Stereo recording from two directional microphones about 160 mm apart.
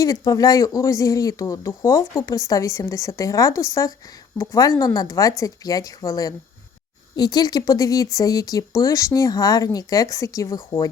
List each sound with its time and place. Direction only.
0.0 s speech: 20° left (ahead or behind)